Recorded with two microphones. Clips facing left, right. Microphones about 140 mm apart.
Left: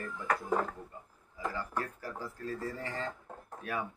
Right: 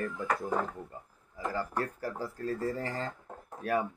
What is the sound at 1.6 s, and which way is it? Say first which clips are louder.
Speech: right 4 dB; 40° right (ahead or behind).